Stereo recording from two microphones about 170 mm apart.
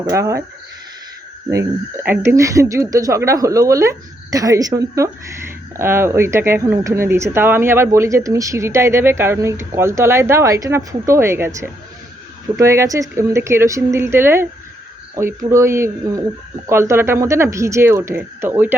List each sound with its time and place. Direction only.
0.1 s speech: 15° right (ahead or behind)
2.0 s speech: 15° right (ahead or behind)